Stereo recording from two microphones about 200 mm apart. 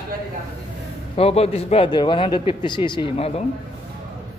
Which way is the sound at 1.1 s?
30° left (ahead or behind).